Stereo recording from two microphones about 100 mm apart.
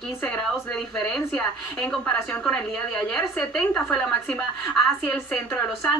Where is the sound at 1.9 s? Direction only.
10° left (ahead or behind).